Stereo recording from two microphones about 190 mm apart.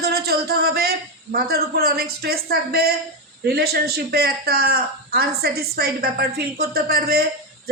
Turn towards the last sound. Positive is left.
turn(degrees=-55)  # may be behind; listen again after turning